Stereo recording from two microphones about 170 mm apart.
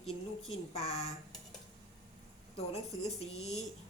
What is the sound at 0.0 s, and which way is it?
Speech, 35° left (ahead or behind).